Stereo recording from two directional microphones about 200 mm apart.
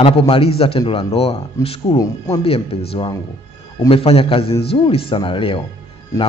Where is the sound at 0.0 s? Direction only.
30° left (ahead or behind).